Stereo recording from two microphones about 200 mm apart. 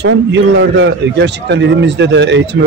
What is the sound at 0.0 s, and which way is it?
A man's voice, 65° right (ahead or behind).